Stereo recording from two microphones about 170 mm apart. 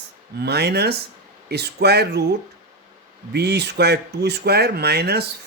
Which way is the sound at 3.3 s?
75° right (ahead or behind).